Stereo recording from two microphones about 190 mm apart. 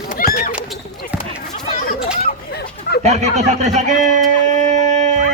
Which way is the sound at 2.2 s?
55° left (ahead or behind).